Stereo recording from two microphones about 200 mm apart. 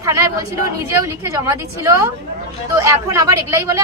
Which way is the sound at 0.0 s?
15° right (ahead or behind).